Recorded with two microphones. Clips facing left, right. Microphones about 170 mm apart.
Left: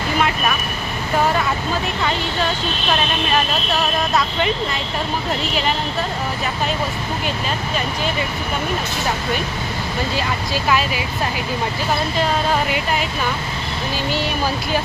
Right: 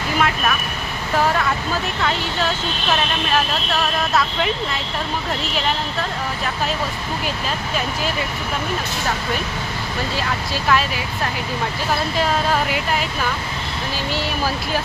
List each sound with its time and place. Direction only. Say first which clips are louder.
0.2 s speech: even; centre (ahead or behind)
3.3 s speech: even; centre (ahead or behind)
10.2 s speech: left 2 dB; centre (ahead or behind)